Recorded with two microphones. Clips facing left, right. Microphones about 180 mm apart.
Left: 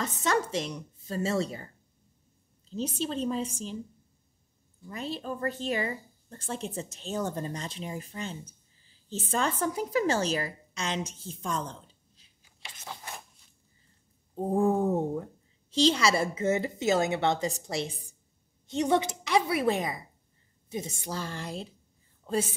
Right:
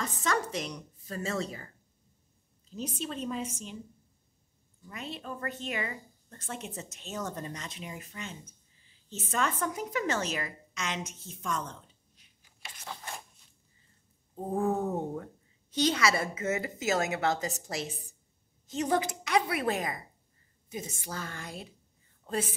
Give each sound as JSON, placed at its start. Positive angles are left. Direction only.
{"t": 0.0, "sound": "a sound", "side_deg": 25}
{"t": 0.7, "sound": "a woman's voice", "side_deg": 25}
{"t": 2.7, "sound": "a woman's voice", "side_deg": 30}
{"t": 4.8, "sound": "a woman's voice", "side_deg": 35}
{"t": 14.3, "sound": "a sound", "side_deg": 30}
{"t": 14.7, "sound": "speech", "side_deg": 10}
{"t": 15.9, "sound": "a woman's voice", "side_deg": 30}
{"t": 18.7, "sound": "a woman's voice", "side_deg": 25}
{"t": 21.0, "sound": "a woman's voice", "side_deg": 30}